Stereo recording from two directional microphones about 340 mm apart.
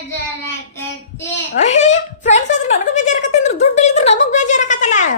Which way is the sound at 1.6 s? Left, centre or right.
Centre.